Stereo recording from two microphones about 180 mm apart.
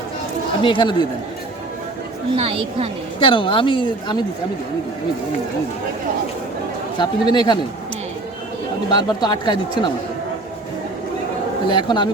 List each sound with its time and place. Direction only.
0.6 s speech: 25° left (ahead or behind)
2.3 s a woman's voice: 30° right (ahead or behind)
3.2 s speech: 30° left (ahead or behind)
7.0 s speech: 25° left (ahead or behind)
8.9 s speech: 25° left (ahead or behind)
11.7 s speech: 25° left (ahead or behind)